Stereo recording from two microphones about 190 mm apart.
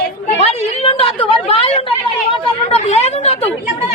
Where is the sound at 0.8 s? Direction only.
30° left (ahead or behind).